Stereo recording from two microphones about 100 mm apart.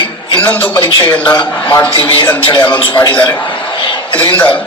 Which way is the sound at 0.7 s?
55° left (ahead or behind).